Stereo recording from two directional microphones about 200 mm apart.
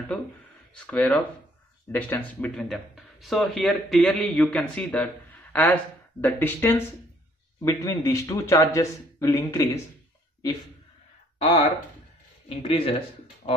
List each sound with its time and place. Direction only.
0.7 s a man's voice: 10° left (ahead or behind)
11.3 s speech: 30° left (ahead or behind)